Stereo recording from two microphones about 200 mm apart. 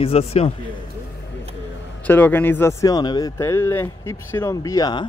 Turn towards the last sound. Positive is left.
turn(degrees=20)  # may be behind; listen again after turning